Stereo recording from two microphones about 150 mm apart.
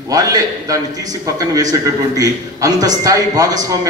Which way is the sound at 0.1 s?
25° right (ahead or behind).